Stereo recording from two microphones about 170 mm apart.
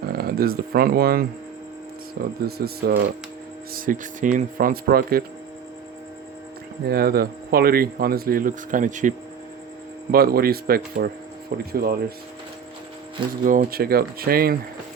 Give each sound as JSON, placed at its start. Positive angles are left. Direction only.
{"t": 0.1, "sound": "speech", "side_deg": -65}
{"t": 3.8, "sound": "speech", "side_deg": -50}
{"t": 6.8, "sound": "speech", "side_deg": -65}
{"t": 10.1, "sound": "speech", "side_deg": -60}
{"t": 13.4, "sound": "speech", "side_deg": -55}